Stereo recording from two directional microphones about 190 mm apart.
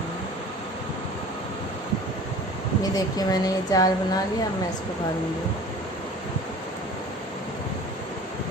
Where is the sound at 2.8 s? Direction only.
20° left (ahead or behind).